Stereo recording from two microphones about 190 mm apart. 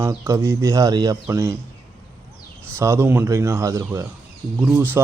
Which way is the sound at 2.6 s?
15° right (ahead or behind).